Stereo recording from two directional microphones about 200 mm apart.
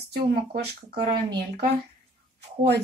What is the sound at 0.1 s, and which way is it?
Speech, 50° right (ahead or behind).